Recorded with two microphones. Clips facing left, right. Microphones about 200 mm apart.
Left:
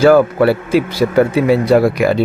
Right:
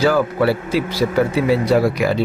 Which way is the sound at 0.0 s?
55° left (ahead or behind).